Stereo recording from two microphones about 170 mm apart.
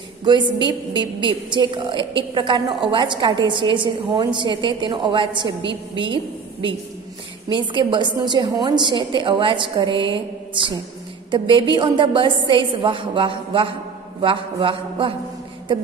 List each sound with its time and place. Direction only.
0.2 s a woman's voice: 25° right (ahead or behind)